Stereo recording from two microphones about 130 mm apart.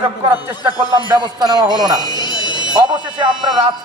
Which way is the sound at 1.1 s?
30° right (ahead or behind).